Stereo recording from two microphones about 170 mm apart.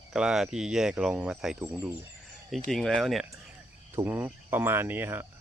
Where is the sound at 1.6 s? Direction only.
15° right (ahead or behind).